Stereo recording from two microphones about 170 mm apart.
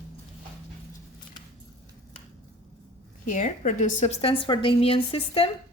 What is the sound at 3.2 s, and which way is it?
A woman's voice, 50° left (ahead or behind).